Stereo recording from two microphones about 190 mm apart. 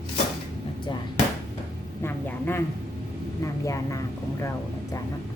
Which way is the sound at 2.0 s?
10° left (ahead or behind).